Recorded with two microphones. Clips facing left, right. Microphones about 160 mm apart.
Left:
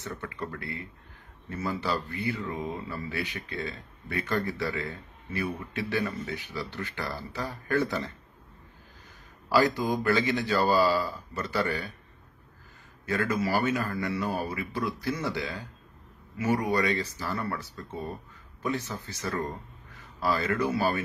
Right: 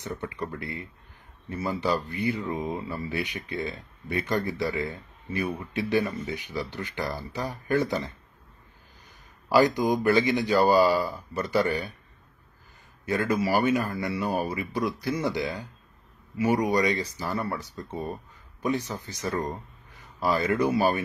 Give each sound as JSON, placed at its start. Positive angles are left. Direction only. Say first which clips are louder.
{"t": 0.0, "sound": "speech", "louder": "right 3 dB", "side_deg": -15}
{"t": 9.5, "sound": "speech", "louder": "right 3 dB", "side_deg": -15}
{"t": 13.0, "sound": "speech", "louder": "right 2 dB", "side_deg": -15}